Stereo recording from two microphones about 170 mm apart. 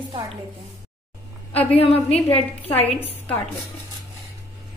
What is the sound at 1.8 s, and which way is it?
Speech, 35° left (ahead or behind).